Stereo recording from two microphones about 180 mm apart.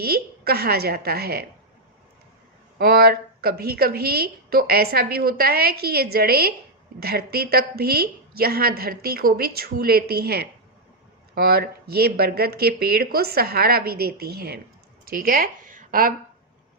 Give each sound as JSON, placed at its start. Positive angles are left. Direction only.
{"t": 0.0, "sound": "a woman's voice", "side_deg": -60}
{"t": 2.7, "sound": "a woman's voice", "side_deg": -55}